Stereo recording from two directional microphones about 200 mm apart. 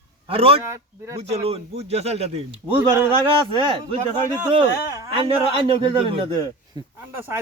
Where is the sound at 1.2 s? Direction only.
30° right (ahead or behind).